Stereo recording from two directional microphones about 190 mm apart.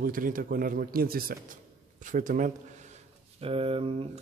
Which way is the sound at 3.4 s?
30° right (ahead or behind).